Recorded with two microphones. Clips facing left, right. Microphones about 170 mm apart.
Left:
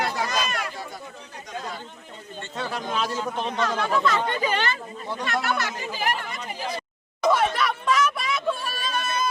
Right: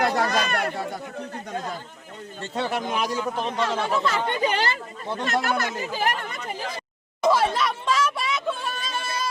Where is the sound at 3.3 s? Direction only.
5° right (ahead or behind).